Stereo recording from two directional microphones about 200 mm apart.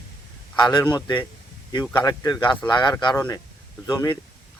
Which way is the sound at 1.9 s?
15° left (ahead or behind).